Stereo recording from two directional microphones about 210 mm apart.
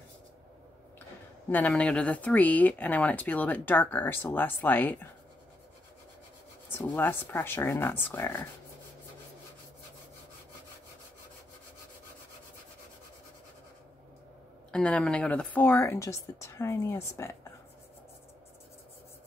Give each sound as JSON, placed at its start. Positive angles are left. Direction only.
{"t": 1.5, "sound": "speech", "side_deg": 5}
{"t": 6.8, "sound": "speech", "side_deg": 10}
{"t": 14.7, "sound": "speech", "side_deg": 5}